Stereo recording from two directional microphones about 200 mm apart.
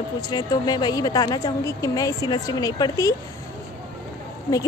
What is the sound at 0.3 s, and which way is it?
A woman's voice, 20° left (ahead or behind).